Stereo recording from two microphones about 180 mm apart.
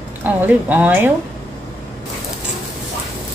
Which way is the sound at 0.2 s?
10° right (ahead or behind).